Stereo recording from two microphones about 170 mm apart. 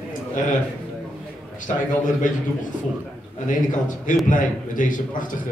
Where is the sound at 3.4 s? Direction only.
50° left (ahead or behind).